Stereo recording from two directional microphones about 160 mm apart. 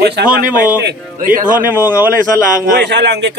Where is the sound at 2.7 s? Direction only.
90° right.